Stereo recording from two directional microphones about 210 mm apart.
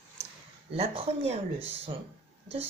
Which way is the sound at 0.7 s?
30° right (ahead or behind).